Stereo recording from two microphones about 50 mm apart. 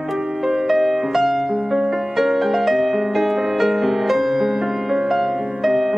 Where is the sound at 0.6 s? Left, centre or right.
Centre.